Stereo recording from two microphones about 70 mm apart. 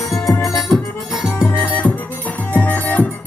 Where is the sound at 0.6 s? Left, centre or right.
Centre.